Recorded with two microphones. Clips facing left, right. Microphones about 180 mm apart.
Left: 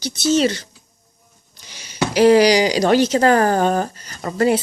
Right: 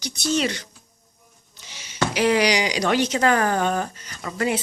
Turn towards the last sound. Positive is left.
turn(degrees=40)  # may be behind; listen again after turning